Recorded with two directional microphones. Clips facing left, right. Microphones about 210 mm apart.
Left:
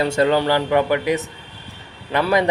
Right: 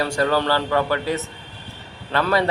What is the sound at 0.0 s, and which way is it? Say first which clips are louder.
A man's voice: left 3 dB; 20° left (ahead or behind).